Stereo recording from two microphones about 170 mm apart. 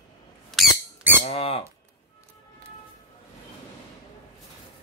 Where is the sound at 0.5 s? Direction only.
Centre (ahead or behind).